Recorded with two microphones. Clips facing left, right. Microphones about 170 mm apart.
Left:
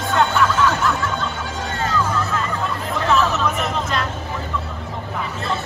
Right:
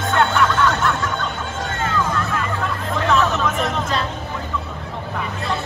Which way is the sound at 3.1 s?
Centre (ahead or behind).